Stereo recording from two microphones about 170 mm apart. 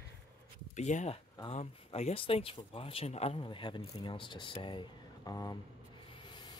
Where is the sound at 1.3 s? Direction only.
25° left (ahead or behind).